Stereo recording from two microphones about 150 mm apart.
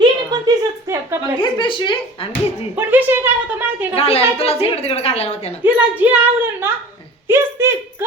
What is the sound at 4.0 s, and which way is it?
A woman's voice, 40° left (ahead or behind).